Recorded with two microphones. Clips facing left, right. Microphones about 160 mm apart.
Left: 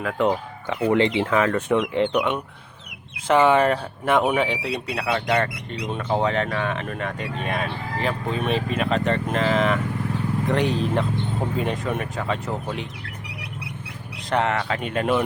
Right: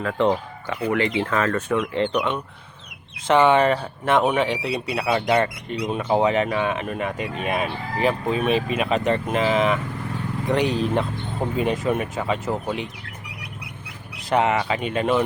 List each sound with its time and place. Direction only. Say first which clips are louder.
0.0 s speech: right 1 dB; 5° left (ahead or behind)
0.9 s speech: left 3 dB; 25° left (ahead or behind)
1.2 s speech: left 2 dB; 15° left (ahead or behind); by 12.9 s 5° right (ahead or behind)
14.3 s speech: right 2 dB; 5° right (ahead or behind)